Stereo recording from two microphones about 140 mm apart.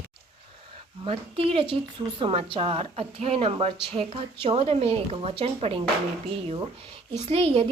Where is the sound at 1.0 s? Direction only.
40° right (ahead or behind).